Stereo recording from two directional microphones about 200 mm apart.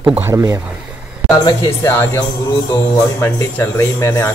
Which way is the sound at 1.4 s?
20° left (ahead or behind).